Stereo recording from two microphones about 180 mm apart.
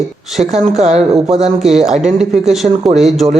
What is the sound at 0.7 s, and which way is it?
Speech, 35° right (ahead or behind).